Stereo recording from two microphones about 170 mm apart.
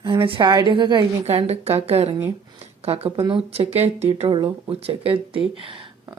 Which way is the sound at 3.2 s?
30° right (ahead or behind).